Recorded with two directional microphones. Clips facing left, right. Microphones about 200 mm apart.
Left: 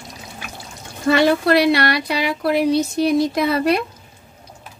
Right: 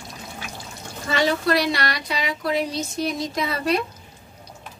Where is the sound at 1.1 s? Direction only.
60° left (ahead or behind).